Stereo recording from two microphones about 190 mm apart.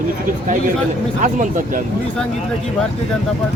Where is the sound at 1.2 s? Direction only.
40° right (ahead or behind).